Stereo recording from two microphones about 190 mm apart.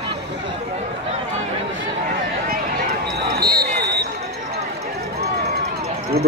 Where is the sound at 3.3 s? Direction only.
55° right (ahead or behind).